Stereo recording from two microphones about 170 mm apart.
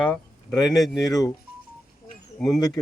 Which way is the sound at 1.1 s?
20° left (ahead or behind).